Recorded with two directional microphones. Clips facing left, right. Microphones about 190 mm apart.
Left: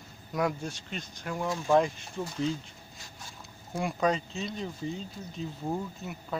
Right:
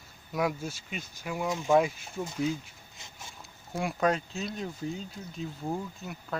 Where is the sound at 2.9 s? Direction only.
20° right (ahead or behind).